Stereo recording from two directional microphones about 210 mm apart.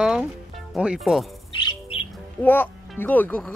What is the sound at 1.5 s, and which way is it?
Bird, 25° left (ahead or behind).